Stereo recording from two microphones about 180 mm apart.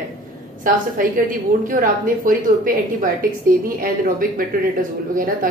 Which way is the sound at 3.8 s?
50° right (ahead or behind).